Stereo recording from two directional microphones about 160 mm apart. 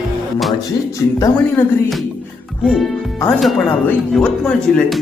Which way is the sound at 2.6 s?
Centre (ahead or behind).